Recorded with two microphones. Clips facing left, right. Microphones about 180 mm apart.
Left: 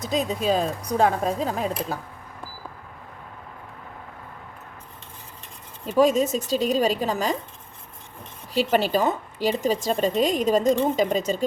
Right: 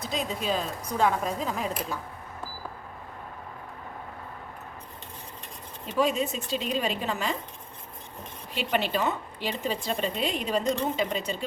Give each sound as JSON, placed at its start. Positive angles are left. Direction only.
{"t": 0.0, "sound": "a woman's voice", "side_deg": 40}
{"t": 5.8, "sound": "a woman's voice", "side_deg": 45}
{"t": 8.5, "sound": "a woman's voice", "side_deg": 40}